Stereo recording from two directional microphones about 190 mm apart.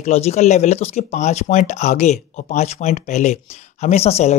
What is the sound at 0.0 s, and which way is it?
Speech, 35° left (ahead or behind).